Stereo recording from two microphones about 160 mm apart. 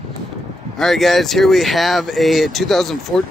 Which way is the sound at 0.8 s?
Centre (ahead or behind).